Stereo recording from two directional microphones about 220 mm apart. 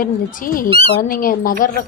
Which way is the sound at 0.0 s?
40° left (ahead or behind).